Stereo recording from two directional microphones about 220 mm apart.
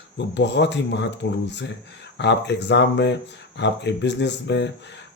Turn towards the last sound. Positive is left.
turn(degrees=50)  # may be behind; listen again after turning